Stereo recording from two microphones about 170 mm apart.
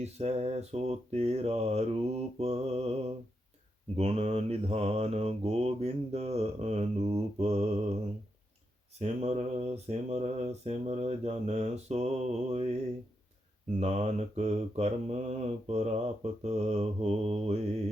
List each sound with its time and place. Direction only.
0.0 s mantra: 40° right (ahead or behind)
3.9 s mantra: 40° right (ahead or behind)
9.0 s mantra: 40° right (ahead or behind)
13.7 s mantra: 40° right (ahead or behind)